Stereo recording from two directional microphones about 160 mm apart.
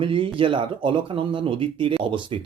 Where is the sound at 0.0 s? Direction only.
35° right (ahead or behind).